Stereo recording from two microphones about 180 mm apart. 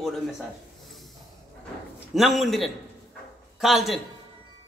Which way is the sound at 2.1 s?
Centre (ahead or behind).